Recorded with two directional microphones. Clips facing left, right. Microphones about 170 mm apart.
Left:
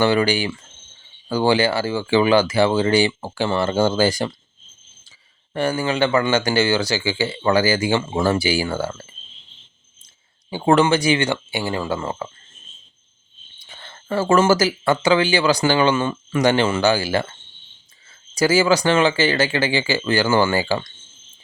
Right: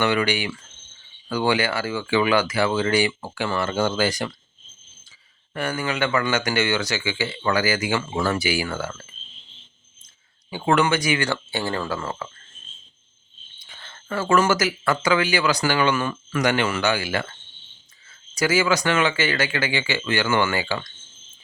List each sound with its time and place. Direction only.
0.0 s speech: 30° left (ahead or behind)
5.5 s speech: 30° left (ahead or behind)
10.5 s speech: 30° left (ahead or behind)
11.5 s speech: 15° left (ahead or behind)
13.6 s speech: 30° left (ahead or behind)
18.3 s speech: 30° left (ahead or behind)